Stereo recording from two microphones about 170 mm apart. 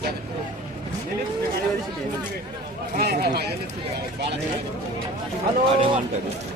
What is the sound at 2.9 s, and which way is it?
Speech, 65° right (ahead or behind).